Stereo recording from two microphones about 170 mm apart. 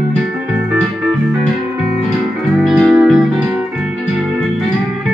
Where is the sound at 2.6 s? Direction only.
Centre (ahead or behind).